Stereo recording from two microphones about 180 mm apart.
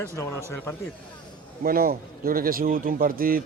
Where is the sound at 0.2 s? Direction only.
15° left (ahead or behind).